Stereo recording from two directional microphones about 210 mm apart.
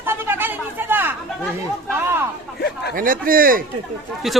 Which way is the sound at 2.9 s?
40° right (ahead or behind).